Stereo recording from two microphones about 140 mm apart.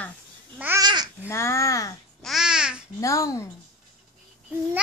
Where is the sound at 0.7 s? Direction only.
30° right (ahead or behind).